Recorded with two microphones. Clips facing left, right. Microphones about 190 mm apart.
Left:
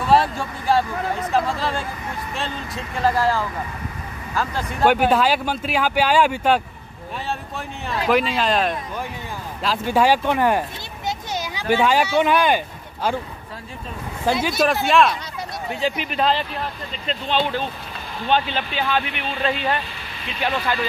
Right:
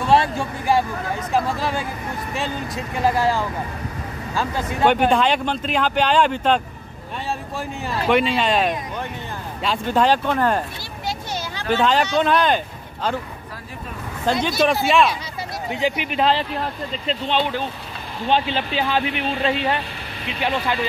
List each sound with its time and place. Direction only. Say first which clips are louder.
0.0 s a sound: even; centre (ahead or behind)
1.6 s speech: right 1 dB; 15° right (ahead or behind)
4.8 s speech: even; 5° left (ahead or behind)
11.1 s a sound: left 1 dB; 15° left (ahead or behind)
14.2 s speech: right 1 dB; 5° left (ahead or behind)
15.7 s speech: right 2 dB; 15° right (ahead or behind)
18.3 s speech: right 1 dB; 30° right (ahead or behind)